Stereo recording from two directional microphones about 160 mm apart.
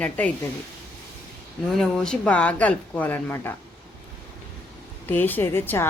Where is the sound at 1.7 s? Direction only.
5° left (ahead or behind).